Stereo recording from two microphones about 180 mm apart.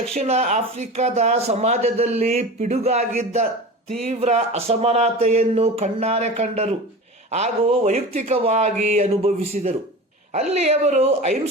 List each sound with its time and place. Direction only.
0.1 s speech: 35° right (ahead or behind)